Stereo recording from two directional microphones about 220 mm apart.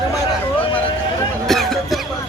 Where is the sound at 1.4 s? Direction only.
Centre (ahead or behind).